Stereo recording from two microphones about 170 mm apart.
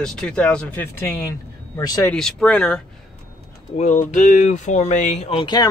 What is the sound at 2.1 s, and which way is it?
Speech, 5° left (ahead or behind).